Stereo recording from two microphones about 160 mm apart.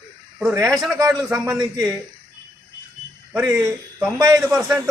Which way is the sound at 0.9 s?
20° right (ahead or behind).